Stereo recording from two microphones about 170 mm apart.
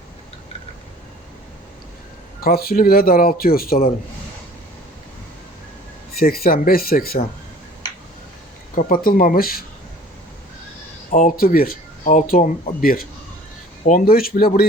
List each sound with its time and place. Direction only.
2.4 s a man's voice: 60° left (ahead or behind)
6.1 s a man's voice: 60° left (ahead or behind)
8.7 s a man's voice: 55° left (ahead or behind)
11.1 s a man's voice: 50° left (ahead or behind)